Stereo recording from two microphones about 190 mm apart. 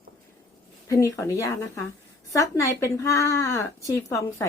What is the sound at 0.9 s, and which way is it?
Speech, 15° left (ahead or behind).